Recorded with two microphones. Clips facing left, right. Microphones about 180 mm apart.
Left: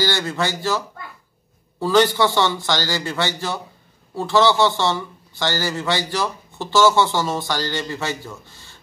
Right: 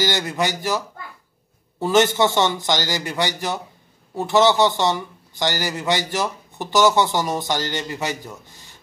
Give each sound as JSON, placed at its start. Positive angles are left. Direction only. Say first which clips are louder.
{"t": 0.0, "sound": "a man's voice", "louder": "even", "side_deg": -15}